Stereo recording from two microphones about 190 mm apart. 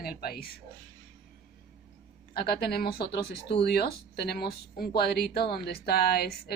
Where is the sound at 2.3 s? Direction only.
55° left (ahead or behind).